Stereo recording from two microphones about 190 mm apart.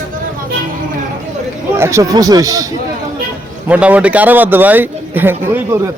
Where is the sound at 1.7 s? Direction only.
15° right (ahead or behind).